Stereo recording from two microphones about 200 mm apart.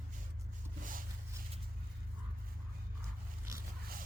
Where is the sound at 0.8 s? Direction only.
45° right (ahead or behind).